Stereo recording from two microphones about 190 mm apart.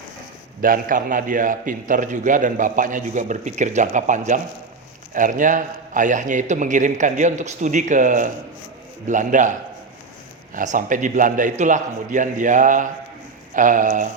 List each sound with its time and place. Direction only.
0.6 s a man's voice: 45° right (ahead or behind)